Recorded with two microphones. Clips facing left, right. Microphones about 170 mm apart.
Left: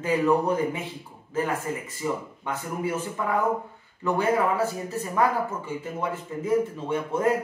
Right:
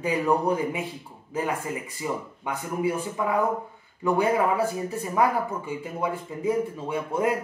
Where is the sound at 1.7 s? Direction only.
15° right (ahead or behind).